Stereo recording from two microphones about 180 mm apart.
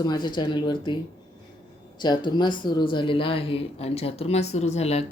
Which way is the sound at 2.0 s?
25° left (ahead or behind).